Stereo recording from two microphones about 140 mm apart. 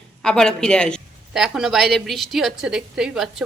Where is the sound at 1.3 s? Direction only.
5° right (ahead or behind).